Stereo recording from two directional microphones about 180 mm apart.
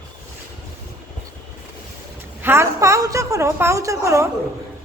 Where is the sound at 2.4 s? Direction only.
15° right (ahead or behind).